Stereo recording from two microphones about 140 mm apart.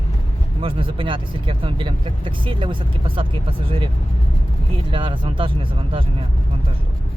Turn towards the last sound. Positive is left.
turn(degrees=-40)  # may be behind; listen again after turning